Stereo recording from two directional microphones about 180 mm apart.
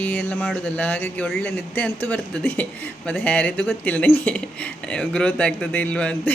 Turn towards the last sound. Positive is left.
turn(degrees=5)  # may be behind; listen again after turning